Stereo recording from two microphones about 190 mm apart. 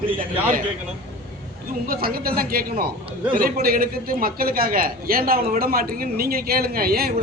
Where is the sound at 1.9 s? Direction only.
50° right (ahead or behind).